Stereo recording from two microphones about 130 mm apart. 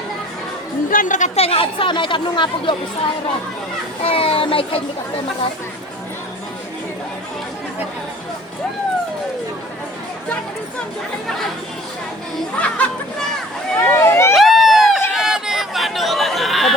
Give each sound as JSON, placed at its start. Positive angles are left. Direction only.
{"t": 0.9, "sound": "speech", "side_deg": 85}
{"t": 1.4, "sound": "speech", "side_deg": 45}
{"t": 4.0, "sound": "speech", "side_deg": 45}
{"t": 12.5, "sound": "chatter", "side_deg": 10}
{"t": 13.8, "sound": "vehicle", "side_deg": 20}
{"t": 14.3, "sound": "a sound", "side_deg": 0}
{"t": 15.1, "sound": "chatter", "side_deg": -5}